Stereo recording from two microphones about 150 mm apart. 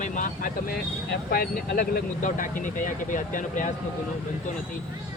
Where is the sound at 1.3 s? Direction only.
85° left; by 3.7 s 60° left (ahead or behind).